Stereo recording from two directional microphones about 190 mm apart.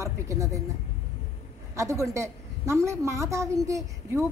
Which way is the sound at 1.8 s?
15° right (ahead or behind).